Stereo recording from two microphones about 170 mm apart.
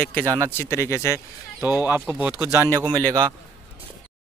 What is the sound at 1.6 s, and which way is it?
Speech, 10° right (ahead or behind).